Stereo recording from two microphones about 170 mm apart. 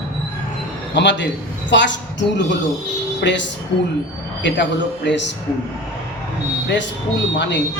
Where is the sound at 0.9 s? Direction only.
90° left.